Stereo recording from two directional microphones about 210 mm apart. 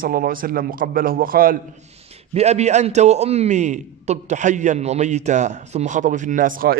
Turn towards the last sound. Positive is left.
turn(degrees=-40)  # may be behind; listen again after turning